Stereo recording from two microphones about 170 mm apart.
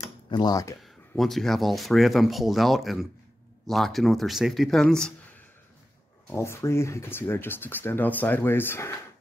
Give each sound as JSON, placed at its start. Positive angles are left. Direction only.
{"t": 0.0, "sound": "tick-tock", "side_deg": 25}
{"t": 1.1, "sound": "speech", "side_deg": 0}
{"t": 6.2, "sound": "speech", "side_deg": 15}